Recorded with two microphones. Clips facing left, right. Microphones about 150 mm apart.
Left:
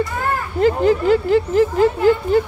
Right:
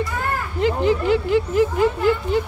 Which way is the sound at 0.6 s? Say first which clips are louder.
Left 4 dB; 45° left (ahead or behind).